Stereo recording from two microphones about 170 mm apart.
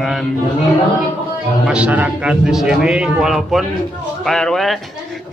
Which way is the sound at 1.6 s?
5° right (ahead or behind).